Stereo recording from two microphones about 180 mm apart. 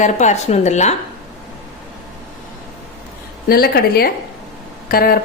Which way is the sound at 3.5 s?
60° left (ahead or behind).